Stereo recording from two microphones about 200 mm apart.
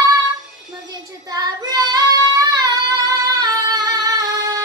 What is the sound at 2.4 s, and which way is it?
Singing, 20° right (ahead or behind).